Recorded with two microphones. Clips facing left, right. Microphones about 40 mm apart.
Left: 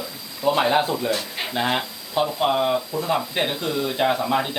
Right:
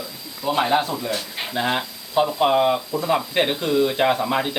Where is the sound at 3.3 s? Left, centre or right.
Right.